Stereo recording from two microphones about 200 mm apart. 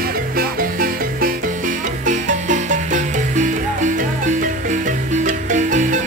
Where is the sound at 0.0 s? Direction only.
45° right (ahead or behind).